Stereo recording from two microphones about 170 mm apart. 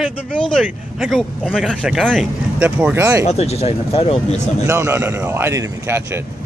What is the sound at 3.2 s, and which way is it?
Speech, 40° left (ahead or behind).